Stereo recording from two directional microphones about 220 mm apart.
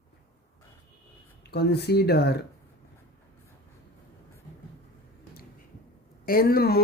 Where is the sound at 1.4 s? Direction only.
50° left (ahead or behind).